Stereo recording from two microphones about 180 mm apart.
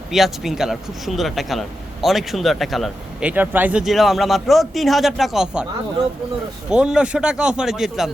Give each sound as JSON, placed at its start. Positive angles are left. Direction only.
{"t": 0.1, "sound": "speech", "side_deg": 0}
{"t": 6.7, "sound": "speech", "side_deg": -5}